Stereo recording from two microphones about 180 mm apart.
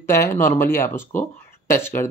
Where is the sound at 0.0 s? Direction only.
15° left (ahead or behind).